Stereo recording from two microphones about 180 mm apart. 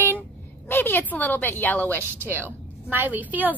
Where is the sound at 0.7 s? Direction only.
10° left (ahead or behind).